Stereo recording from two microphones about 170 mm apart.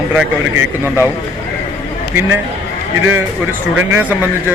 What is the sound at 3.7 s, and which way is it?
Speech, 10° right (ahead or behind).